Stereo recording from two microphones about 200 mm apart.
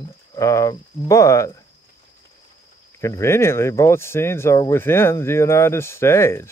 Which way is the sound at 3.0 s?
15° left (ahead or behind).